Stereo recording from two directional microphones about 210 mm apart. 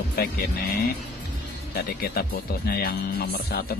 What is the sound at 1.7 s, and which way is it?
Speech, 45° left (ahead or behind).